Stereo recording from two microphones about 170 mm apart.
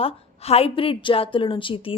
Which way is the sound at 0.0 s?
35° left (ahead or behind).